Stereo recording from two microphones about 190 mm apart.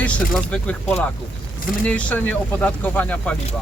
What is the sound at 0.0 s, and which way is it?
Speech, 5° left (ahead or behind).